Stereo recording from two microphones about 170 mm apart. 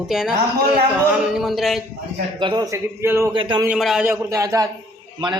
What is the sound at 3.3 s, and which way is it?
Speech, 30° right (ahead or behind).